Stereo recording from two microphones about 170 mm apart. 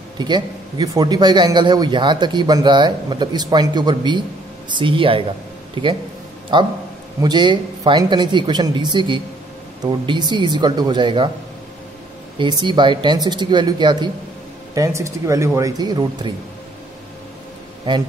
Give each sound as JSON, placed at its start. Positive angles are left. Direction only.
{"t": 0.2, "sound": "a man's voice", "side_deg": -25}
{"t": 12.4, "sound": "a man's voice", "side_deg": -25}